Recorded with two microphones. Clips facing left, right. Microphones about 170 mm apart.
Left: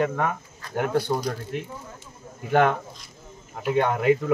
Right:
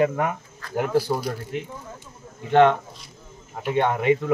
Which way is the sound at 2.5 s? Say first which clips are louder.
Right 4 dB; 5° left (ahead or behind).